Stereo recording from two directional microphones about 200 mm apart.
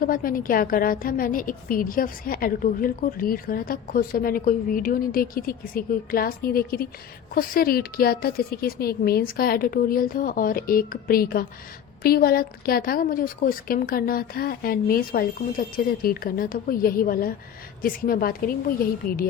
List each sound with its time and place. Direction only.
0.0 s a woman's voice: 45° left (ahead or behind)